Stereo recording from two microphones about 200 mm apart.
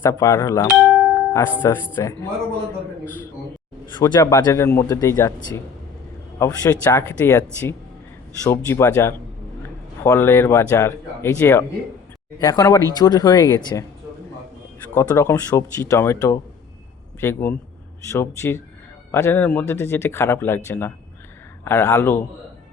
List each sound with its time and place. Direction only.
0.0 s speech: 15° left (ahead or behind)
0.7 s music: centre (ahead or behind)
1.1 s music: 15° left (ahead or behind)
1.6 s speech: 15° left (ahead or behind)
4.0 s speech: 15° left (ahead or behind)
6.4 s speech: 10° left (ahead or behind)
14.9 s speech: 15° left (ahead or behind)